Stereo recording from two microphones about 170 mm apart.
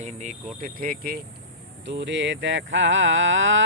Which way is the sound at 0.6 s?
55° right (ahead or behind).